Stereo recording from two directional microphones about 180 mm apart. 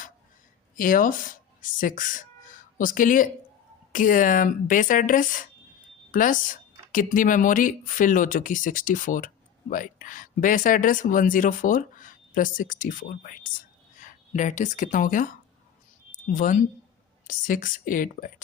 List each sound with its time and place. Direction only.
0.8 s speech: 50° left (ahead or behind)